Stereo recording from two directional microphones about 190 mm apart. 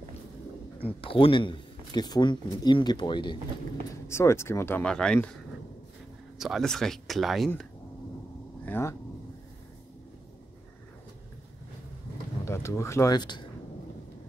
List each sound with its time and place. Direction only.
1.0 s speech: 30° left (ahead or behind)
4.1 s speech: 15° left (ahead or behind)
6.3 s speech: centre (ahead or behind)
8.6 s speech: 10° left (ahead or behind)
12.4 s speech: 15° left (ahead or behind)